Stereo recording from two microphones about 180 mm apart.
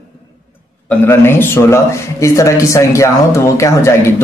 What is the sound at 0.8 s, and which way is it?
A man's voice, 15° left (ahead or behind).